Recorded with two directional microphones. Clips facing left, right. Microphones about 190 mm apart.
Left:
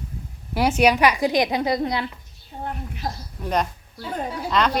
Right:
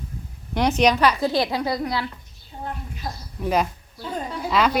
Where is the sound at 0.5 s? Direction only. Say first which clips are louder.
Left 1 dB; 5° left (ahead or behind); by 2.1 s 20° left (ahead or behind).